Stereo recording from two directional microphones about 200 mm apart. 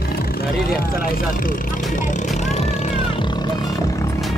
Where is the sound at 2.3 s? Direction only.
35° left (ahead or behind); by 4.1 s 20° left (ahead or behind).